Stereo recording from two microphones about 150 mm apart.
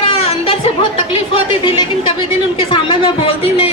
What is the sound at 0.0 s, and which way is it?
Chatter, 40° left (ahead or behind).